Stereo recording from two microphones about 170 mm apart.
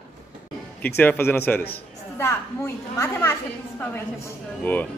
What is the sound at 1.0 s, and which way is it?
A woman's voice, 10° left (ahead or behind).